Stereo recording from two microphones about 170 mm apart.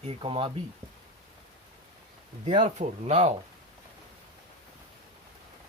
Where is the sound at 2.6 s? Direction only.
45° right (ahead or behind).